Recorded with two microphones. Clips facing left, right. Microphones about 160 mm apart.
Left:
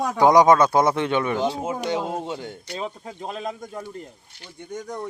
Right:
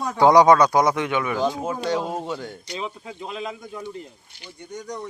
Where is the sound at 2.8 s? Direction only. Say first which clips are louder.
Left 1 dB; 40° left (ahead or behind).